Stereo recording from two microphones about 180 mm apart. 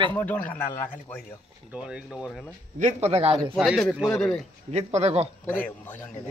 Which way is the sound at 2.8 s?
40° right (ahead or behind).